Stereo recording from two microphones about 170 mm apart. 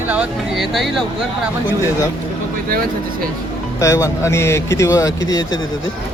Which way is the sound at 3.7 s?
20° left (ahead or behind).